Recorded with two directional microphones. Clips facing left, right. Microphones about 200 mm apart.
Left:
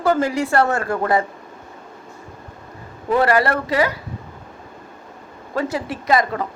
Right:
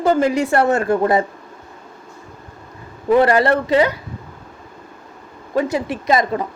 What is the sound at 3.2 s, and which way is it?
Speech, 25° right (ahead or behind).